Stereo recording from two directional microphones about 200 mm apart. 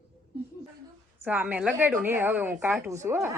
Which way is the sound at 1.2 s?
10° right (ahead or behind).